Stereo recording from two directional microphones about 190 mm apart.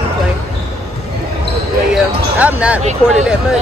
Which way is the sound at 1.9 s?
5° right (ahead or behind).